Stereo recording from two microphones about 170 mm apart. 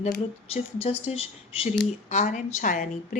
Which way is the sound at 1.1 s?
35° left (ahead or behind).